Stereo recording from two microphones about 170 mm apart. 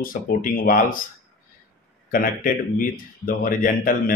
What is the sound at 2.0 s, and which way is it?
Speech, 55° left (ahead or behind).